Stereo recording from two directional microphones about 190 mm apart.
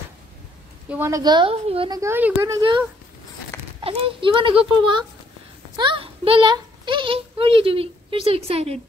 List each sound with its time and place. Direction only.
0.8 s speech: 10° right (ahead or behind); by 2.0 s 30° right (ahead or behind)
2.0 s speech: 10° right (ahead or behind)
3.8 s a child's voice: 25° right (ahead or behind)